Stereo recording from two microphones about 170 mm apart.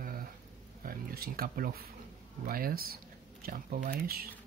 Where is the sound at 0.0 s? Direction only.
60° right (ahead or behind).